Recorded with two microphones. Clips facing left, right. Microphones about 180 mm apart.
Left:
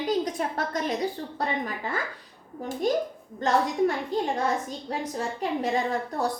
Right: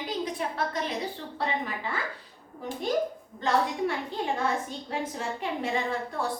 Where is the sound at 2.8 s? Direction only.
45° left (ahead or behind).